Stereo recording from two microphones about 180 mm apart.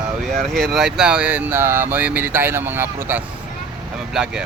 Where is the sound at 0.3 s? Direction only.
Centre (ahead or behind).